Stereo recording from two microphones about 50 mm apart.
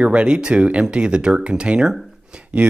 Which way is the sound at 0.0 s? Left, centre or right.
Right.